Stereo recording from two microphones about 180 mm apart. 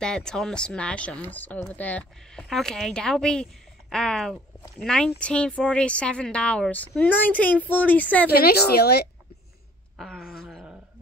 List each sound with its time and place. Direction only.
0.0 s a woman's voice: 5° left (ahead or behind)
8.3 s a woman's voice: 60° left (ahead or behind)
9.9 s speech: centre (ahead or behind)
10.5 s a sound: 5° right (ahead or behind)